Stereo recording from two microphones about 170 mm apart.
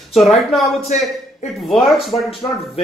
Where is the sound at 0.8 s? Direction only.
40° left (ahead or behind).